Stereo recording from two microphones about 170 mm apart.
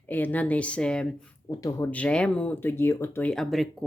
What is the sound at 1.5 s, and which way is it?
Speech, 20° left (ahead or behind).